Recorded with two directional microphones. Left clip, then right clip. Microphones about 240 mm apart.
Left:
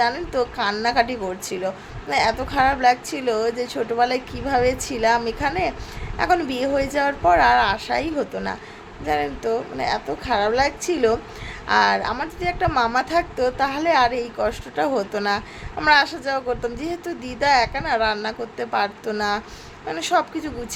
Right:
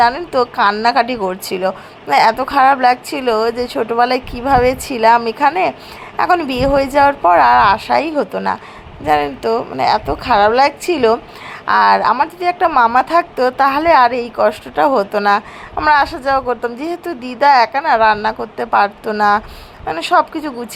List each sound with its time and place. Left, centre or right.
0.3 s a woman's voice: centre